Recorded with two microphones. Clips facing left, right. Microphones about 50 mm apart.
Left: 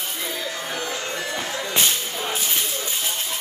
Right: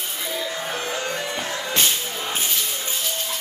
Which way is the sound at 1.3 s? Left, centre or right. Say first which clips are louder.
Even; left.